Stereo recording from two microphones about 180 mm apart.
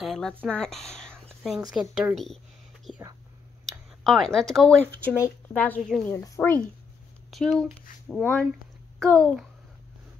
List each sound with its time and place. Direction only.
0.0 s speech: centre (ahead or behind)
4.0 s speech: centre (ahead or behind)
6.1 s speech: 15° left (ahead or behind)
7.2 s speech: centre (ahead or behind)